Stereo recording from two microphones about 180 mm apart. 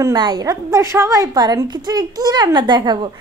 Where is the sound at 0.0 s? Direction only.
20° right (ahead or behind).